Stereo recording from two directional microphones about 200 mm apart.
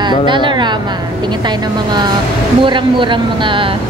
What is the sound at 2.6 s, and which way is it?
Speech, 25° right (ahead or behind).